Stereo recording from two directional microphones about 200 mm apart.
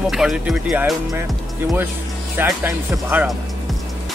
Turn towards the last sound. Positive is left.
turn(degrees=-10)  # may be behind; listen again after turning